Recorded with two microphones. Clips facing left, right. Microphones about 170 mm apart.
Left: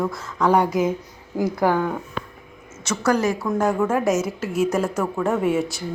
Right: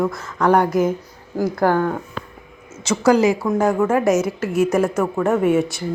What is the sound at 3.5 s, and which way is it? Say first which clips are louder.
A woman's voice: right 3 dB; centre (ahead or behind).